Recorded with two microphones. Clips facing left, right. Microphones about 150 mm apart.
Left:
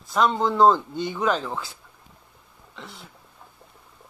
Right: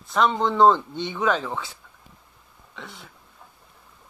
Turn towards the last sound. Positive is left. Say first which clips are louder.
# right 1 dB
turn(degrees=0)  # may be behind; listen again after turning